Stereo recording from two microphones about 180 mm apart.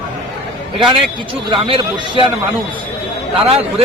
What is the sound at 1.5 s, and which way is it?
Speech, 25° right (ahead or behind).